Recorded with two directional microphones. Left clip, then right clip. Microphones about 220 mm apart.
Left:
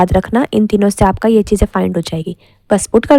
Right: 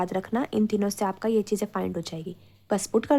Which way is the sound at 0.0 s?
40° left (ahead or behind).